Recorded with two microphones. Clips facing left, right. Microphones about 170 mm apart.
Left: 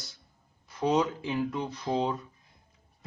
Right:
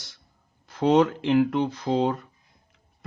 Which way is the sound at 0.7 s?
75° right (ahead or behind).